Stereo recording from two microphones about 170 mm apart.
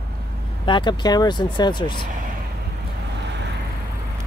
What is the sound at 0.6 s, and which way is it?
Speech, 25° left (ahead or behind).